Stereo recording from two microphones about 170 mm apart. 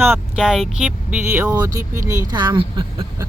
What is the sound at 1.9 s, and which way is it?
Speech, 50° right (ahead or behind).